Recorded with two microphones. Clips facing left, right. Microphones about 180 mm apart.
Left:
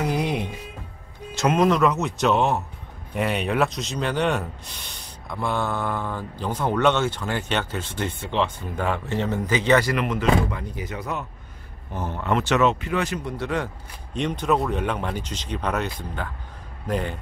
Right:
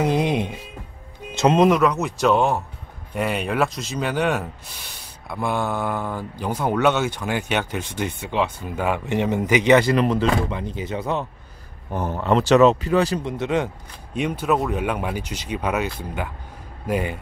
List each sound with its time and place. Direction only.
0.0 s music: 20° right (ahead or behind)
1.3 s speech: 20° right (ahead or behind)
1.8 s speech: centre (ahead or behind); by 11.2 s 30° right (ahead or behind)
11.9 s a man's voice: 55° right (ahead or behind)
12.2 s speech: 35° right (ahead or behind)
13.2 s speech: 20° right (ahead or behind)
14.1 s speech: 5° right (ahead or behind)